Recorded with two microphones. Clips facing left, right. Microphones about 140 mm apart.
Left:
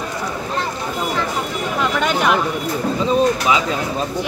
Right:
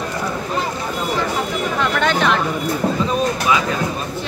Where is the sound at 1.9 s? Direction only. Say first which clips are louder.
Even; 10° left (ahead or behind).